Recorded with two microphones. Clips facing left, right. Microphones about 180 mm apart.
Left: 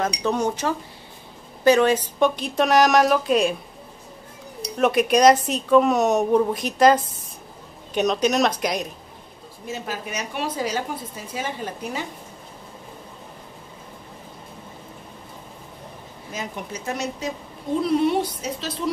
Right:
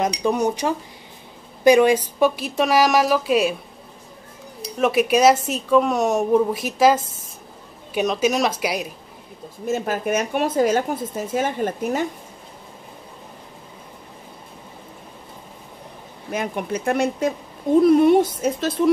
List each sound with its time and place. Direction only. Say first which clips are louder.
0.2 s speech: right 2 dB; 10° right (ahead or behind)
4.7 s speech: right 1 dB; centre (ahead or behind)
9.7 s a woman's voice: right 9 dB; 50° right (ahead or behind)
16.3 s a woman's voice: right 7 dB; 60° right (ahead or behind)